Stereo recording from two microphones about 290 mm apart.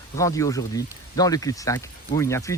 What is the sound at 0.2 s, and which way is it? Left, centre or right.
Speech, centre.